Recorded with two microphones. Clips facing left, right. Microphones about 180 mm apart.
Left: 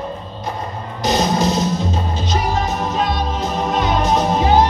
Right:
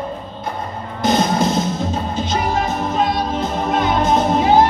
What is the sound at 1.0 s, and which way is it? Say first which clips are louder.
Music: right 1 dB; 55° right (ahead or behind).